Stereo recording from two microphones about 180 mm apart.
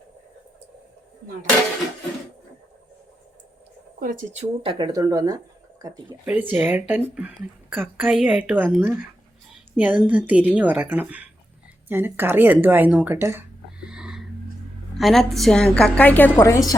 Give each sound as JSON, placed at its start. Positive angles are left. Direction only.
{"t": 4.0, "sound": "a woman's voice", "side_deg": -45}
{"t": 9.5, "sound": "a sound", "side_deg": -10}
{"t": 10.1, "sound": "a woman's voice", "side_deg": -10}